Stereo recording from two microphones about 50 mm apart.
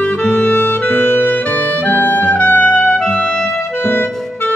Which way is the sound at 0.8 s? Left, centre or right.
Left.